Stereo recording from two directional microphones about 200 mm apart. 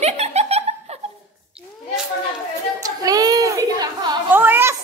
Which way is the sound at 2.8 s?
20° right (ahead or behind).